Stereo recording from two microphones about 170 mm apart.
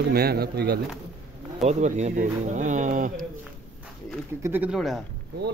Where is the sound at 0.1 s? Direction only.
65° right (ahead or behind).